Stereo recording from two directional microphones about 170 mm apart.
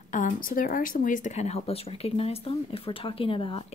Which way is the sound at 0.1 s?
50° left (ahead or behind).